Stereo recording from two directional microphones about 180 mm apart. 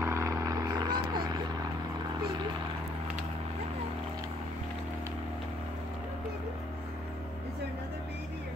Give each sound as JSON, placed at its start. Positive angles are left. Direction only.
{"t": 0.0, "sound": "vehicle", "side_deg": -15}